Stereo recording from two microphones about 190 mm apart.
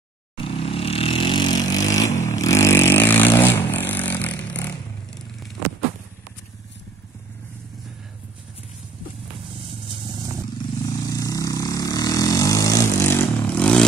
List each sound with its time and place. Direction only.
0.4 s vehicle: 30° left (ahead or behind); by 5.5 s 5° left (ahead or behind)
11.1 s vehicle: 20° left (ahead or behind)